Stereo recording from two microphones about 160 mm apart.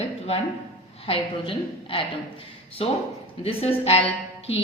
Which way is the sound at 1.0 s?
35° left (ahead or behind).